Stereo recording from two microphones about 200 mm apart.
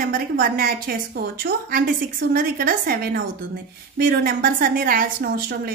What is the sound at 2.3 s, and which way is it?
A woman's voice, 45° right (ahead or behind).